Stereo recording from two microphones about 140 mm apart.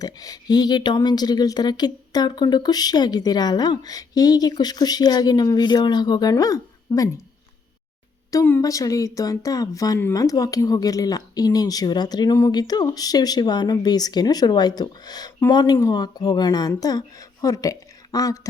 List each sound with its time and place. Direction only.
0.0 s speech: 25° left (ahead or behind)
8.3 s speech: 20° left (ahead or behind)